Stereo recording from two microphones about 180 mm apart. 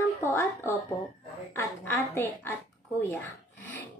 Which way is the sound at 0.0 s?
15° left (ahead or behind).